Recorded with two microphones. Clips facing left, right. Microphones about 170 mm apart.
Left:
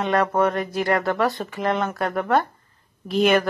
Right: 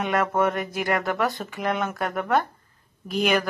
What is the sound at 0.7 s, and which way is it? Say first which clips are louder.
Speech: left 3 dB; centre (ahead or behind).